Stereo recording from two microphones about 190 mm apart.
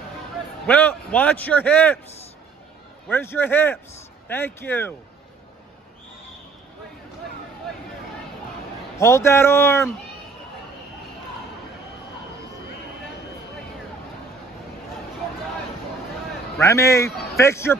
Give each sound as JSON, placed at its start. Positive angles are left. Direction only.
{"t": 0.7, "sound": "a man's voice", "side_deg": 10}
{"t": 3.1, "sound": "a man's voice", "side_deg": 10}
{"t": 8.9, "sound": "a man's voice", "side_deg": 15}
{"t": 16.5, "sound": "a man's voice", "side_deg": 15}